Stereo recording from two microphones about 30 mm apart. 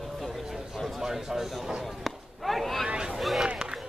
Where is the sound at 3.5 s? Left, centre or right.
Right.